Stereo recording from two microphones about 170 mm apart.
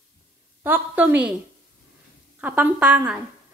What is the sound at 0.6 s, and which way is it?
Speech, 10° right (ahead or behind).